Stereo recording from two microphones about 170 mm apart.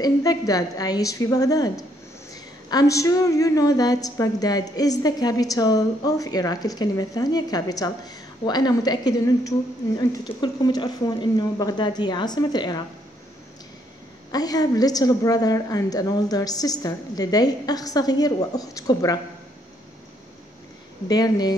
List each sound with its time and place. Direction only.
0.0 s a woman's voice: 20° left (ahead or behind)
2.7 s a woman's voice: 20° left (ahead or behind)
14.3 s a woman's voice: 20° left (ahead or behind)
21.1 s a woman's voice: 25° left (ahead or behind)